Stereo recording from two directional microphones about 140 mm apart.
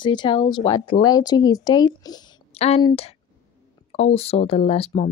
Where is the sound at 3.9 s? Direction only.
45° left (ahead or behind).